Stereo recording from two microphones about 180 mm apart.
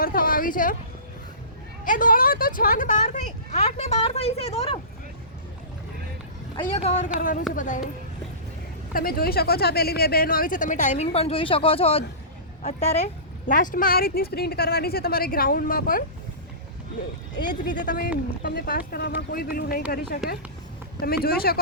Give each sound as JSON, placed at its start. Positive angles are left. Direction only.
{"t": 0.0, "sound": "a sound", "side_deg": 50}
{"t": 1.8, "sound": "speech", "side_deg": 50}
{"t": 6.6, "sound": "speech", "side_deg": 35}
{"t": 7.2, "sound": "speech", "side_deg": 50}
{"t": 8.9, "sound": "speech", "side_deg": 55}
{"t": 13.5, "sound": "speech", "side_deg": 45}
{"t": 17.8, "sound": "speech", "side_deg": 55}